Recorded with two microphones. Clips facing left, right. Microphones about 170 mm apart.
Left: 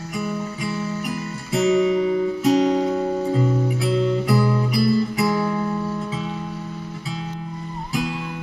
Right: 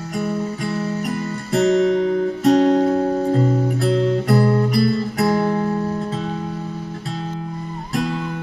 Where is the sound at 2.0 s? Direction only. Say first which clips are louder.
Right 1 dB; 45° right (ahead or behind).